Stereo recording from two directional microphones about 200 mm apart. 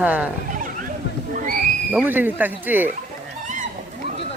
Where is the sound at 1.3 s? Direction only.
45° right (ahead or behind).